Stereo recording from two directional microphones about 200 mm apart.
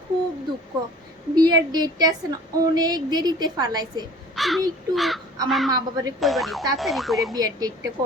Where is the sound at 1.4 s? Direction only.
20° right (ahead or behind).